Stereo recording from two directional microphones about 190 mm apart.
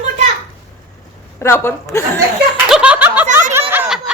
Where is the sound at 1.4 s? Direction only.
15° left (ahead or behind).